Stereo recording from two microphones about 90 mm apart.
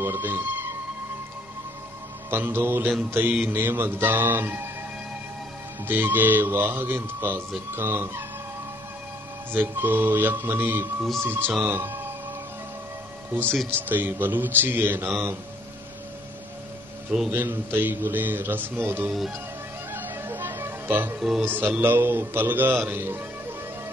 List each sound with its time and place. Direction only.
0.0 s speech: 25° right (ahead or behind)
2.3 s a man's voice: 25° right (ahead or behind)
5.9 s a man's voice: 20° right (ahead or behind)
9.5 s a man's voice: 20° right (ahead or behind)
13.3 s a man's voice: 25° right (ahead or behind)
17.3 s a man's voice: 25° right (ahead or behind)
19.9 s music: 25° right (ahead or behind)
21.2 s speech: 5° right (ahead or behind)
21.5 s a man's voice: 25° right (ahead or behind)